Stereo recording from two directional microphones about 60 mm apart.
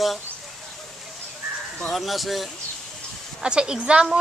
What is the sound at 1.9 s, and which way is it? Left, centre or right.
Speech, centre.